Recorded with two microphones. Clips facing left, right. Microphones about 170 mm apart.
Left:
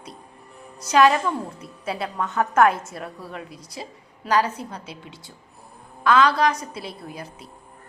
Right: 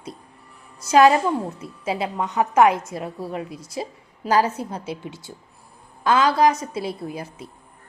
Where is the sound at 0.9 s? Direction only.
30° right (ahead or behind).